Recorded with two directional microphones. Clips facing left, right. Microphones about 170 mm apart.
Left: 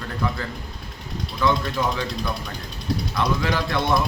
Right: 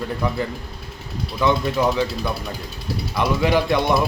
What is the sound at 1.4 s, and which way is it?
Speech, 15° right (ahead or behind).